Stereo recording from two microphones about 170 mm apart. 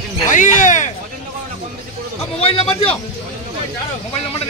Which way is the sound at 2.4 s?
35° left (ahead or behind).